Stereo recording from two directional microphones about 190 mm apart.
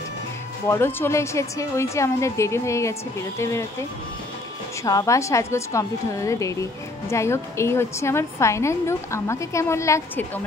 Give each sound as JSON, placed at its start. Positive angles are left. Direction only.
{"t": 0.7, "sound": "a woman's voice", "side_deg": 10}
{"t": 4.8, "sound": "a woman's voice", "side_deg": 15}